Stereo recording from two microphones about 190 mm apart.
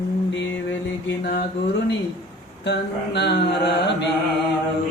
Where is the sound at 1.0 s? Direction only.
55° left (ahead or behind).